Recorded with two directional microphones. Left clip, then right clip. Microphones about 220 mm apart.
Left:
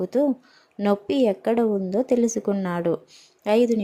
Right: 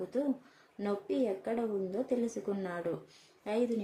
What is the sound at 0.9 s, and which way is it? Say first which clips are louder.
A woman's voice: left 12 dB; 40° left (ahead or behind).